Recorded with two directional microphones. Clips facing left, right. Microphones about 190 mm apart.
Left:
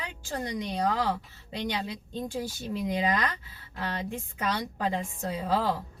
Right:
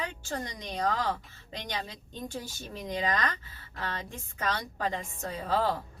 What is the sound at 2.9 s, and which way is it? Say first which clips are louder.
A woman's voice: left 1 dB; 10° left (ahead or behind).